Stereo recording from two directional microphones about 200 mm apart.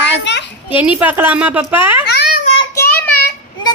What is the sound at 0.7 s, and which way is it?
Speech, 5° right (ahead or behind).